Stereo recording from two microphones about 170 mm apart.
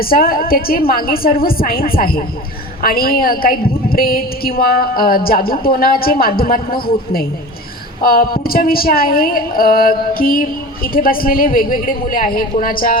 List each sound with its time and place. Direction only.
0.0 s speech: 60° left (ahead or behind)